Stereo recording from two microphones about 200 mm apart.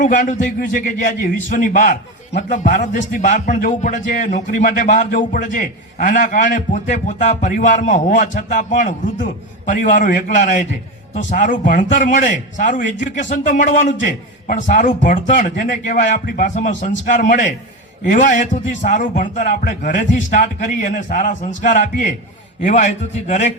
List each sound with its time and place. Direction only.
0.0 s a man's voice: 40° left (ahead or behind)